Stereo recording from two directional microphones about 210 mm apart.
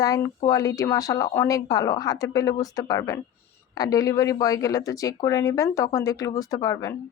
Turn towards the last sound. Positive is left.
turn(degrees=15)  # may be behind; listen again after turning